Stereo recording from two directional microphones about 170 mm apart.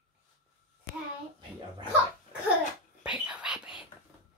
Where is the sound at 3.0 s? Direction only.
5° right (ahead or behind).